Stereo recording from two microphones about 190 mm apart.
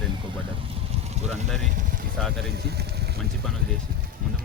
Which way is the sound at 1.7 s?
45° right (ahead or behind).